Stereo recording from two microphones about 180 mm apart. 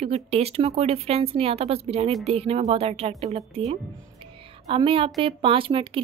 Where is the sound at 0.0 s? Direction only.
35° right (ahead or behind).